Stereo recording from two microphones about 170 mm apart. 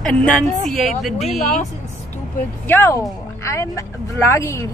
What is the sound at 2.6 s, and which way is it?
Speech, 15° left (ahead or behind).